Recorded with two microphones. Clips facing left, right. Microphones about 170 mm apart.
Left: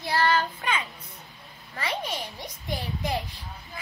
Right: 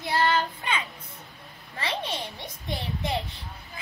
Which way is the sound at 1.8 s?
30° right (ahead or behind).